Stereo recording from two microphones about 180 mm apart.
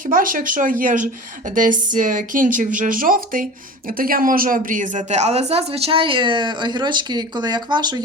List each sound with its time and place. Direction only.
0.0 s speech: 50° right (ahead or behind); by 7.9 s 25° right (ahead or behind)